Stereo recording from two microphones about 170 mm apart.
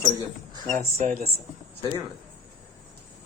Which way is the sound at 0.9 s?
50° right (ahead or behind).